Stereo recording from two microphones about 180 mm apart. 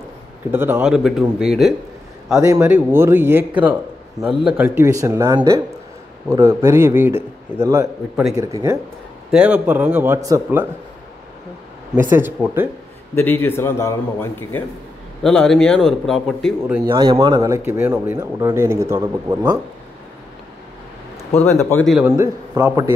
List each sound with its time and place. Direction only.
0.5 s speech: 10° right (ahead or behind)
9.3 s speech: 5° right (ahead or behind)
11.9 s speech: 10° right (ahead or behind)
13.1 s a man's voice: 10° left (ahead or behind)
15.2 s speech: centre (ahead or behind)
16.9 s speech: 25° right (ahead or behind)
21.5 s a man's voice: 15° left (ahead or behind)
22.0 s speech: 15° right (ahead or behind)